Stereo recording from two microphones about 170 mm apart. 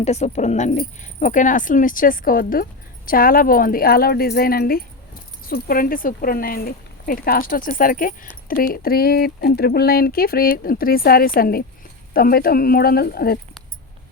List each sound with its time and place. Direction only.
0.0 s speech: 40° left (ahead or behind); by 13.4 s 65° left (ahead or behind)